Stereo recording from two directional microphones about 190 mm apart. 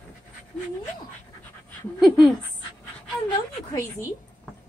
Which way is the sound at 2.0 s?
Centre (ahead or behind).